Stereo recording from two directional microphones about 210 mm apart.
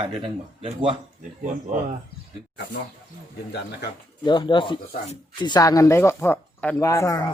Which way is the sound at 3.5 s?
50° left (ahead or behind).